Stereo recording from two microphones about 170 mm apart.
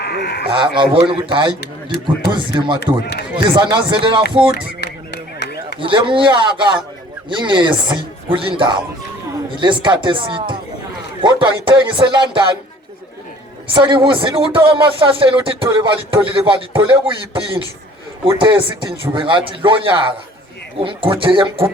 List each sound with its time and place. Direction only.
0.0 s speech: 70° left (ahead or behind)
0.5 s a man's voice: 30° right (ahead or behind)
2.8 s a man's voice: 75° left (ahead or behind)
3.3 s a man's voice: 30° right (ahead or behind)
4.5 s a sound: 80° left
5.8 s a man's voice: 30° right (ahead or behind)
13.7 s a man's voice: 30° right (ahead or behind)